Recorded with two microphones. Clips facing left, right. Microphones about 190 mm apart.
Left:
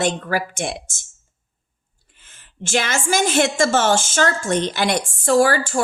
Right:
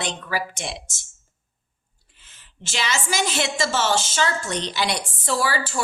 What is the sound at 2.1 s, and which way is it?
A woman's voice, 50° left (ahead or behind).